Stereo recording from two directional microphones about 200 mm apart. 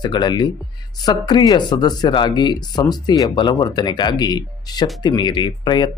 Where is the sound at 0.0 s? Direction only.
20° left (ahead or behind).